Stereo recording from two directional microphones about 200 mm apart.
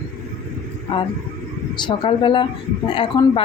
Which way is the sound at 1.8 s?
25° left (ahead or behind).